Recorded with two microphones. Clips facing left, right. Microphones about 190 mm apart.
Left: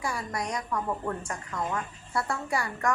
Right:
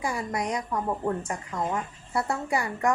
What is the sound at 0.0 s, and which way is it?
Speech, 20° right (ahead or behind).